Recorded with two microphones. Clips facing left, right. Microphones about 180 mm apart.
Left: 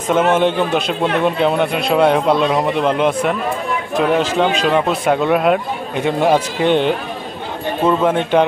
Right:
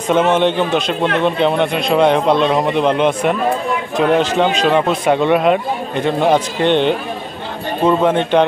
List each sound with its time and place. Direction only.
0.1 s speech: 5° left (ahead or behind)